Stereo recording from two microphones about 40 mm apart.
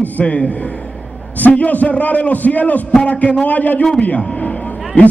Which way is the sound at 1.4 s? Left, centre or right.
Left.